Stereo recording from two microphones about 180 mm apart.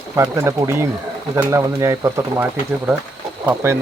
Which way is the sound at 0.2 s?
15° right (ahead or behind).